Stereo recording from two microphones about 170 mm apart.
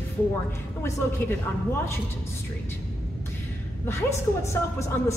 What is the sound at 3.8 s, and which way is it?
A woman's voice, 15° left (ahead or behind).